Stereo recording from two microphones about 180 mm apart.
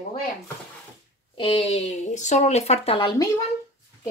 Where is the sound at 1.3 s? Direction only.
30° left (ahead or behind).